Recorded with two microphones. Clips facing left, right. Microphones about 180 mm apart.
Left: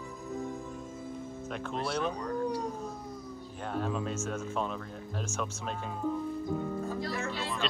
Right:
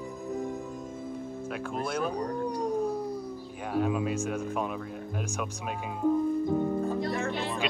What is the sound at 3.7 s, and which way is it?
Speech, 10° right (ahead or behind).